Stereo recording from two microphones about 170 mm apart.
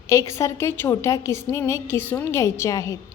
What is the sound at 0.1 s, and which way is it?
A woman's voice, 15° left (ahead or behind).